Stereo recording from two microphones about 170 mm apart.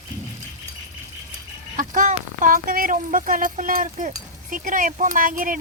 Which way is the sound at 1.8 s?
50° right (ahead or behind).